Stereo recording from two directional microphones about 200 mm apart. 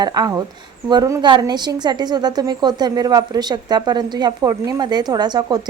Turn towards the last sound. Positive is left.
turn(degrees=-20)  # may be behind; listen again after turning